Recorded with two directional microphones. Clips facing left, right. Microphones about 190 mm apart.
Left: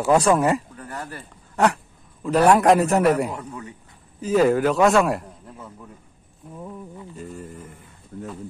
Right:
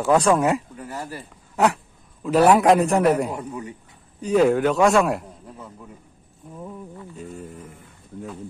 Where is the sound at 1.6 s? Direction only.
5° right (ahead or behind).